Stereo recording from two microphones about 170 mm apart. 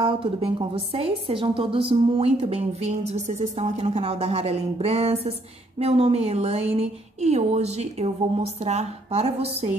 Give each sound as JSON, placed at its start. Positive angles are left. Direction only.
{"t": 0.0, "sound": "a woman's voice", "side_deg": -30}